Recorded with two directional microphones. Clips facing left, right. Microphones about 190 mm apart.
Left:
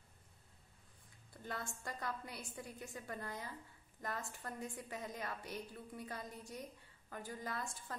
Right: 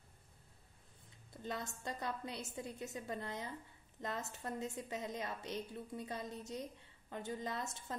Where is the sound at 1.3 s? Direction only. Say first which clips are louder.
Right 3 dB; 20° right (ahead or behind).